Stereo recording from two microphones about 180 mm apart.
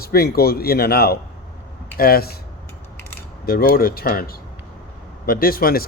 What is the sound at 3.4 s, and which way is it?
Speech, 55° left (ahead or behind).